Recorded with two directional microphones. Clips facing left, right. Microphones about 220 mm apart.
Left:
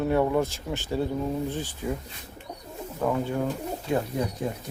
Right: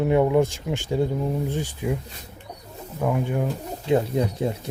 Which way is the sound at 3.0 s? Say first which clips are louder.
Right 2 dB; 15° right (ahead or behind).